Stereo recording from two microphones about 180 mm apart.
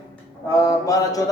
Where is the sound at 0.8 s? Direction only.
20° left (ahead or behind).